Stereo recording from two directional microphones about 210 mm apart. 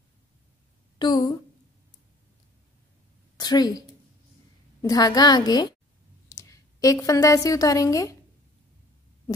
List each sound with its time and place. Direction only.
0.9 s a sound: 20° left (ahead or behind)
3.3 s a woman's voice: 20° left (ahead or behind)
4.8 s a woman's voice: 20° left (ahead or behind)